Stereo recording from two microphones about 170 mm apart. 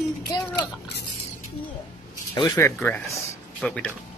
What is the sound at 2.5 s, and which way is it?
Speech, 10° left (ahead or behind).